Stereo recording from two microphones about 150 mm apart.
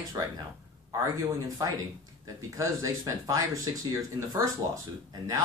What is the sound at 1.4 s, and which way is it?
Speech, 20° right (ahead or behind).